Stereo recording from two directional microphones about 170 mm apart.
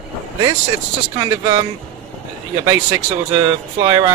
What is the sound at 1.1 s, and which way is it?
Speech, 20° right (ahead or behind).